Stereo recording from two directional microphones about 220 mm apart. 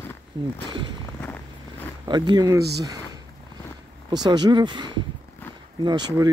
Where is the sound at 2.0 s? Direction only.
20° right (ahead or behind).